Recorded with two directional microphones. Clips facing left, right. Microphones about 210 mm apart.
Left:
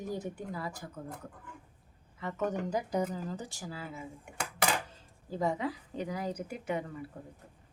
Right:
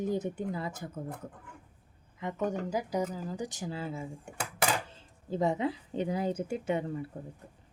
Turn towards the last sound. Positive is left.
turn(degrees=-25)  # may be behind; listen again after turning